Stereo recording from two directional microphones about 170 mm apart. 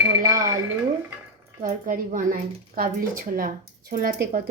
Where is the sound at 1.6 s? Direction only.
50° right (ahead or behind).